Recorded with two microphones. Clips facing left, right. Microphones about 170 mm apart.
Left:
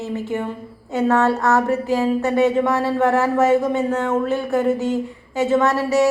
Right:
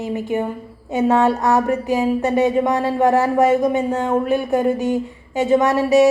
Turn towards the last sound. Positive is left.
turn(degrees=-15)  # may be behind; listen again after turning